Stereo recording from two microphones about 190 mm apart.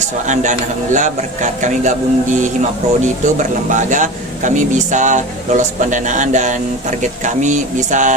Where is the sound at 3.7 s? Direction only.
40° right (ahead or behind).